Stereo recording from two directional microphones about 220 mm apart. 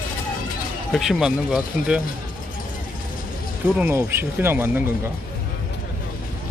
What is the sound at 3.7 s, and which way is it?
Speech, 10° right (ahead or behind).